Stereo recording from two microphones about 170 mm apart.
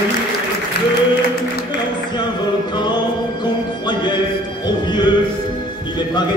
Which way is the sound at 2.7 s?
25° left (ahead or behind).